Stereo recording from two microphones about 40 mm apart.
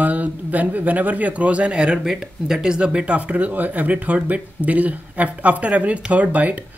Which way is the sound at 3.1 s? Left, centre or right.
Right.